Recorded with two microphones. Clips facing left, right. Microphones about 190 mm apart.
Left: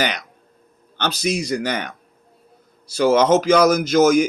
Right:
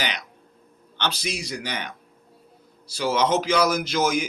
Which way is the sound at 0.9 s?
45° left (ahead or behind).